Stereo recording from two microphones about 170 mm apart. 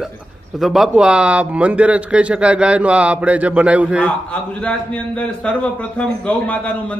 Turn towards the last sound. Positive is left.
turn(degrees=10)  # may be behind; listen again after turning